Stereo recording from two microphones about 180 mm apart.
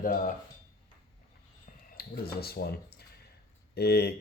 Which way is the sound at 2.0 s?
55° left (ahead or behind).